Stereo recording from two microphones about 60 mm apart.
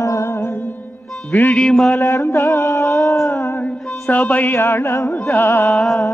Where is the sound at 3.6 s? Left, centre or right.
Left.